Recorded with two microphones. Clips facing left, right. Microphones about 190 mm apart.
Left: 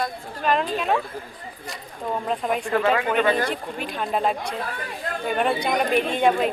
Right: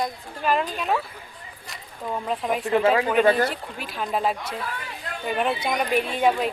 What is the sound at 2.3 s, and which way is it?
Speech, centre (ahead or behind).